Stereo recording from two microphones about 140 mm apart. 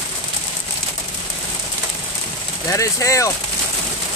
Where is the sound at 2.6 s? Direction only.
25° left (ahead or behind).